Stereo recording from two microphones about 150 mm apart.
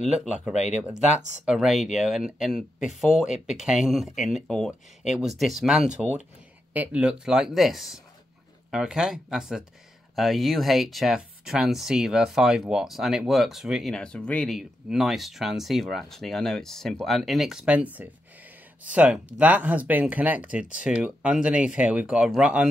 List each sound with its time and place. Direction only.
0.0 s speech: centre (ahead or behind)
0.6 s speech: 50° left (ahead or behind)
1.4 s speech: 5° right (ahead or behind)
3.6 s speech: centre (ahead or behind)